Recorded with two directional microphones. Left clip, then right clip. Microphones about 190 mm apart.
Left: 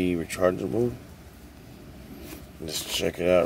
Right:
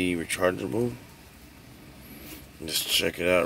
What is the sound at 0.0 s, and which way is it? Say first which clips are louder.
Speech: left 1 dB; centre (ahead or behind).